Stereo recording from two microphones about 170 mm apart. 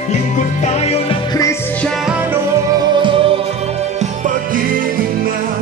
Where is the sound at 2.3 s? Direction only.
25° right (ahead or behind).